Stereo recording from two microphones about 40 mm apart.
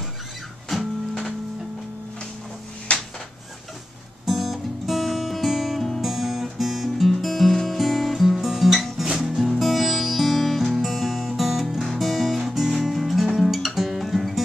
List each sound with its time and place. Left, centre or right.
2.9 s a sound: left
4.3 s music: centre
11.8 s guitar: centre
12.9 s music: centre